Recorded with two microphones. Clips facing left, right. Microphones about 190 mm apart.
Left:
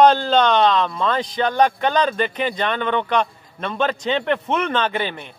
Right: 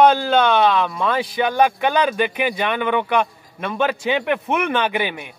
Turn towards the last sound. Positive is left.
turn(degrees=-10)  # may be behind; listen again after turning